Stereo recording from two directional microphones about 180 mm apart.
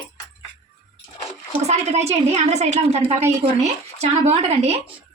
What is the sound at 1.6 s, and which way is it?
A woman's voice, 35° right (ahead or behind).